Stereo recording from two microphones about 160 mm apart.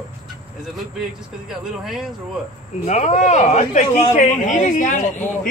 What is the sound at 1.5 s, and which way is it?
Speech, centre (ahead or behind).